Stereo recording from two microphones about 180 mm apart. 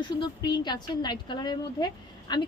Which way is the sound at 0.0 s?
25° left (ahead or behind).